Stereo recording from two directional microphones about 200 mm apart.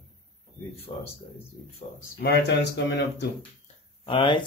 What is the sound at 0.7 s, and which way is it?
Speech, 30° left (ahead or behind).